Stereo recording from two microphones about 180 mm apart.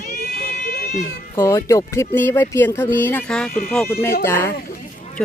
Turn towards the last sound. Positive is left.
turn(degrees=15)  # may be behind; listen again after turning